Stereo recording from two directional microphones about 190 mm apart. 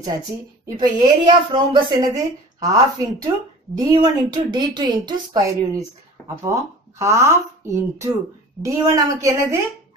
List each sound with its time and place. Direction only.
0.7 s a woman's voice: 20° right (ahead or behind)